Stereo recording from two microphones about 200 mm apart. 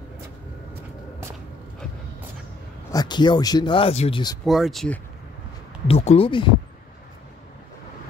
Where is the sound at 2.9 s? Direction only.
20° left (ahead or behind).